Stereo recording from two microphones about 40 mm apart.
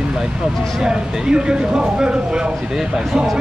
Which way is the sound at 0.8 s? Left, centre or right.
Centre.